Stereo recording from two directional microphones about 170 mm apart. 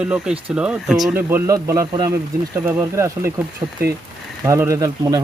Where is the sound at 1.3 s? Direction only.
15° right (ahead or behind).